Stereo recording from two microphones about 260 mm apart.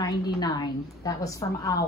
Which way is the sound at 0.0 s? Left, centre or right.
Centre.